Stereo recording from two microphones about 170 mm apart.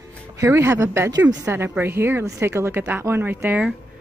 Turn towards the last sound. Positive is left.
turn(degrees=-10)  # may be behind; listen again after turning